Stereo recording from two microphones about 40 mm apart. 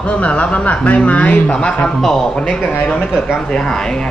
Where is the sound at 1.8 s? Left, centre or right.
Centre.